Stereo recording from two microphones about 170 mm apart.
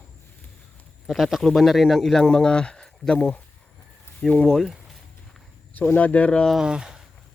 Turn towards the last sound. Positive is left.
turn(degrees=-5)  # may be behind; listen again after turning